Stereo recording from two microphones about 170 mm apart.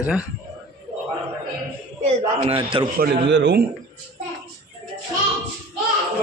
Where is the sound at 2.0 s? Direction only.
35° right (ahead or behind).